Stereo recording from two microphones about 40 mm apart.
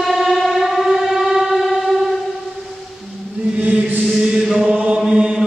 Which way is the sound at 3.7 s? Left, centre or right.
Right.